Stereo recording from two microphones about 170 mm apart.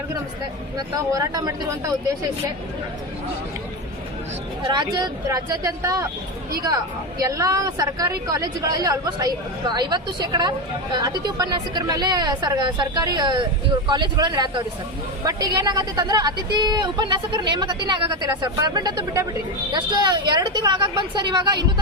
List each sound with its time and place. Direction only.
0.8 s a woman's voice: 20° right (ahead or behind)
4.7 s a woman's voice: 25° right (ahead or behind)
7.2 s a woman's voice: 20° right (ahead or behind)